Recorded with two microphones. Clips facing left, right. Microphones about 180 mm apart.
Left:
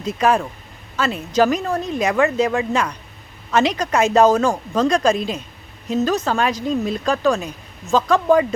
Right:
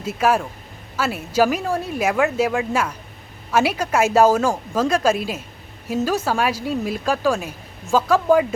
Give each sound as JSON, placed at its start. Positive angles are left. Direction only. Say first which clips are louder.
{"t": 0.0, "sound": "speech", "louder": "left 1 dB", "side_deg": -5}